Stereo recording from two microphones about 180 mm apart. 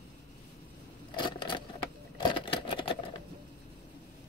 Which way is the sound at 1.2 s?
25° left (ahead or behind).